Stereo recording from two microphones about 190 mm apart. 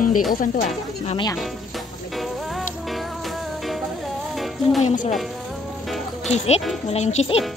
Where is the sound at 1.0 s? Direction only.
25° left (ahead or behind).